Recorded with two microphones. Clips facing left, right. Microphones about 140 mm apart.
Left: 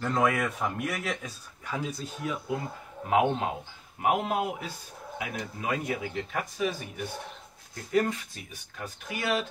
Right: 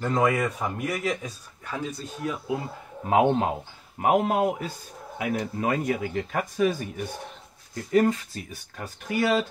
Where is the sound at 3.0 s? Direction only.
35° right (ahead or behind).